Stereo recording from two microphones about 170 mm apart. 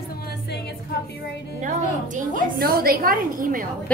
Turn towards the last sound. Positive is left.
turn(degrees=-55)  # may be behind; listen again after turning